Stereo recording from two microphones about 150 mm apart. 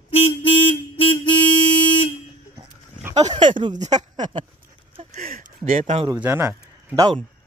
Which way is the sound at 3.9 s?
30° right (ahead or behind).